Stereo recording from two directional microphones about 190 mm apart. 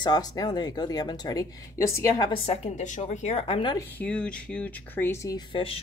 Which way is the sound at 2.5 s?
35° left (ahead or behind).